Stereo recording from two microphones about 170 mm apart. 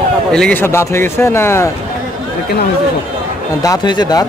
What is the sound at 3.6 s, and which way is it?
Speech, 25° left (ahead or behind).